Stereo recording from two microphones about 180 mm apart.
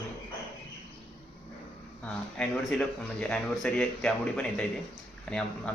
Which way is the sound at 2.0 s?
5° left (ahead or behind).